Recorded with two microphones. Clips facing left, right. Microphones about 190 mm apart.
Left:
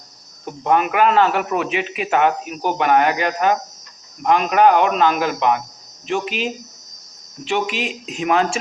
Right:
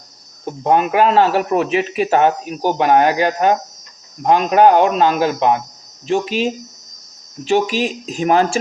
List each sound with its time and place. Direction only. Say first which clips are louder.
0.4 s a man's voice: right 3 dB; 30° right (ahead or behind)